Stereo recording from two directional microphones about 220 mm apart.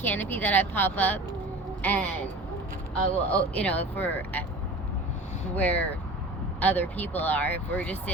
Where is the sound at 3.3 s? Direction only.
5° left (ahead or behind).